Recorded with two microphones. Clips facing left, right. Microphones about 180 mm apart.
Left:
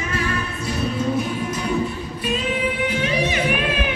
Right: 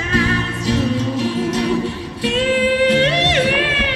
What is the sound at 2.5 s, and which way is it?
Music, 75° right (ahead or behind).